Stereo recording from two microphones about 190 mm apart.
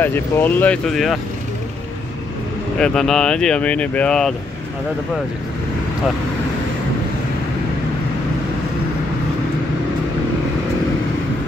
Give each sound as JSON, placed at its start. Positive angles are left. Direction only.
{"t": 0.0, "sound": "speech", "side_deg": 10}
{"t": 2.8, "sound": "speech", "side_deg": 5}